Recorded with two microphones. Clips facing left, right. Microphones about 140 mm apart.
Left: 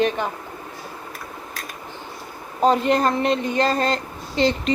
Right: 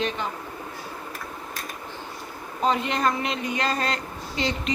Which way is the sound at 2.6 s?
40° left (ahead or behind).